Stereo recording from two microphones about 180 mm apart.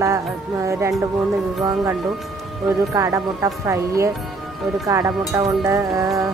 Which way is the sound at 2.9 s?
15° right (ahead or behind).